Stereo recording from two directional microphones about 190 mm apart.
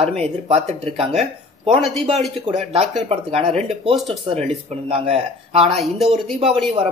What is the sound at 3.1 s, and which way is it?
Speech, 30° right (ahead or behind).